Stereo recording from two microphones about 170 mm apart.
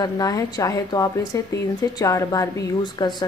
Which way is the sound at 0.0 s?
20° left (ahead or behind).